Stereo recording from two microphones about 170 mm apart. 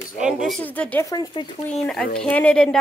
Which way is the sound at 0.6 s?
10° left (ahead or behind).